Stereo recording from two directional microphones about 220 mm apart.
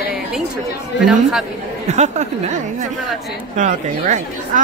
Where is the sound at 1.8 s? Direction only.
30° right (ahead or behind).